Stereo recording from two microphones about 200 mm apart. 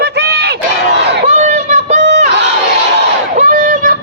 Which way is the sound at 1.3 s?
35° right (ahead or behind).